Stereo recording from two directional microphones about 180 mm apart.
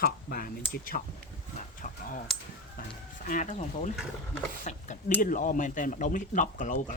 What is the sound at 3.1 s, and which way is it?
Speech, 45° left (ahead or behind).